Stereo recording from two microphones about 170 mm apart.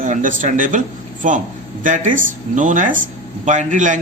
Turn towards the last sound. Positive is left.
turn(degrees=-45)  # may be behind; listen again after turning